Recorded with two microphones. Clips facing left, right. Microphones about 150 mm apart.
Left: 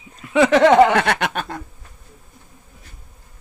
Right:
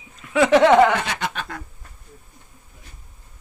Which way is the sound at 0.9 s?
65° left (ahead or behind).